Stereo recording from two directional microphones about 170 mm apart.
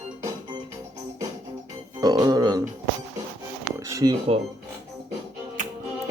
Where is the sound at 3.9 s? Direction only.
20° right (ahead or behind).